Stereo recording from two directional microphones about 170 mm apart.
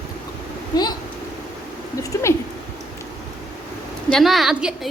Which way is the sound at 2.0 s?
20° left (ahead or behind).